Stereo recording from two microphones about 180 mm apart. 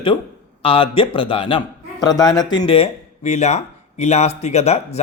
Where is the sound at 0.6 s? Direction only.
30° left (ahead or behind).